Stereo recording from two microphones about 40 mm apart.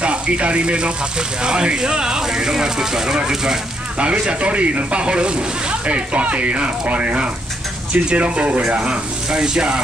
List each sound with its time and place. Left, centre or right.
0.0 s speech: right; by 3.2 s centre
4.0 s speech: right
8.6 s speech: centre